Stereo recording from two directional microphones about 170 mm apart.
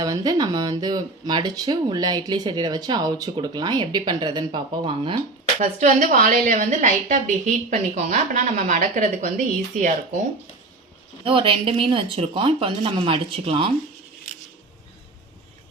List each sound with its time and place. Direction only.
0.0 s speech: 25° right (ahead or behind)
5.5 s a woman's voice: 45° right (ahead or behind)
11.2 s speech: 30° right (ahead or behind)